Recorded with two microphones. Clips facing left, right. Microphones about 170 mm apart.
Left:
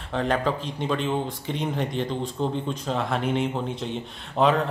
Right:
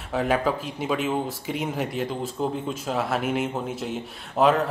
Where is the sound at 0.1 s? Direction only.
5° right (ahead or behind).